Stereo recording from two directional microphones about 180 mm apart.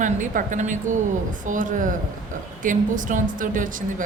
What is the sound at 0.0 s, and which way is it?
A woman's voice, 45° right (ahead or behind).